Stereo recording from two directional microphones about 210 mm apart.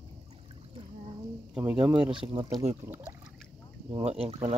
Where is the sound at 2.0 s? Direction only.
25° right (ahead or behind).